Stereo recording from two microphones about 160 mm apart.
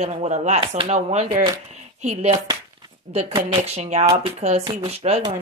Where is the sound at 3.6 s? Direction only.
40° right (ahead or behind).